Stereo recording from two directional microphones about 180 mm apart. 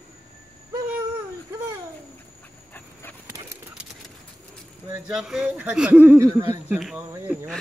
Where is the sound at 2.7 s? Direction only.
10° left (ahead or behind).